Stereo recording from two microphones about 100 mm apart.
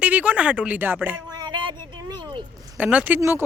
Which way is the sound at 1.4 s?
45° right (ahead or behind).